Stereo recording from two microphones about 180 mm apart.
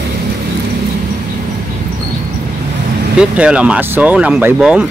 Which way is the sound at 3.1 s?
5° right (ahead or behind).